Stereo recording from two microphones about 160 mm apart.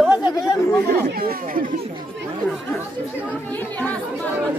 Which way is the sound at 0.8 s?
70° right (ahead or behind).